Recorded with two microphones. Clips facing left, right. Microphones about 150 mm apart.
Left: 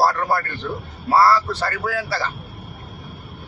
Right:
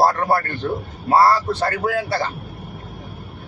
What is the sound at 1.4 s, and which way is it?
Speech, 20° right (ahead or behind).